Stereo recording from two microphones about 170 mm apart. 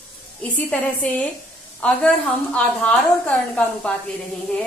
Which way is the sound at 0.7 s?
5° left (ahead or behind).